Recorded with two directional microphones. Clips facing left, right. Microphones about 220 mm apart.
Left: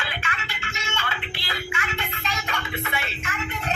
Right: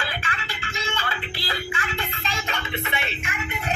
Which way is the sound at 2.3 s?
25° right (ahead or behind).